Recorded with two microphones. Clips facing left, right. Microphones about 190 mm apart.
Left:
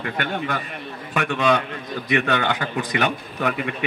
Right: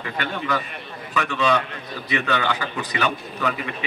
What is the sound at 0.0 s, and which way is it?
A man's voice, 50° left (ahead or behind).